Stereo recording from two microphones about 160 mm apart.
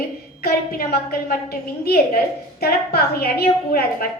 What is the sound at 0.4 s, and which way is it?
A woman's voice, 70° left (ahead or behind).